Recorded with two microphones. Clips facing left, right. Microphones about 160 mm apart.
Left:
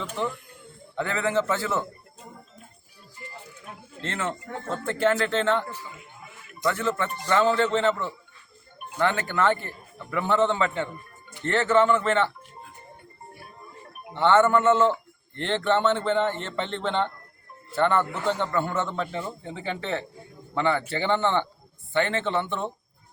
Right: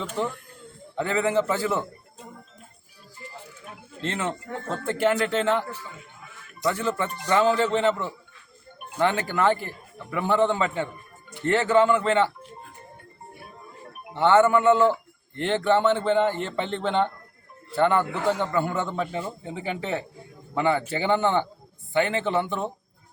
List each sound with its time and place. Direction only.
0.9 s a man's voice: 15° right (ahead or behind)
4.0 s a man's voice: 15° right (ahead or behind)
6.7 s a man's voice: 15° right (ahead or behind)
14.1 s a man's voice: 15° right (ahead or behind)